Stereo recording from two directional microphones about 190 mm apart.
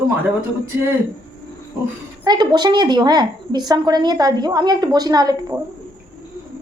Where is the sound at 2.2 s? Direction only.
20° right (ahead or behind).